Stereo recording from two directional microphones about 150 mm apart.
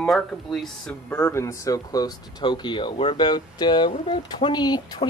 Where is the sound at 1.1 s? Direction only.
20° left (ahead or behind).